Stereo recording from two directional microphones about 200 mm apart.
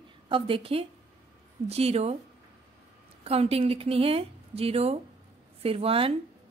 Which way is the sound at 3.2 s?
30° right (ahead or behind).